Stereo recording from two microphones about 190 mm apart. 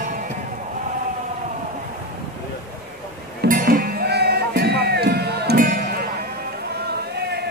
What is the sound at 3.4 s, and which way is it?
Music, 50° right (ahead or behind).